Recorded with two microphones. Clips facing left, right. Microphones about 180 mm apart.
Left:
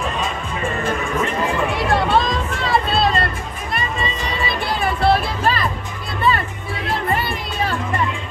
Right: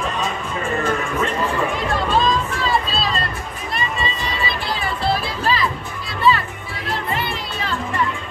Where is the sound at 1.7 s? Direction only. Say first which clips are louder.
Left 3 dB; 70° left (ahead or behind); by 7.7 s 50° left (ahead or behind).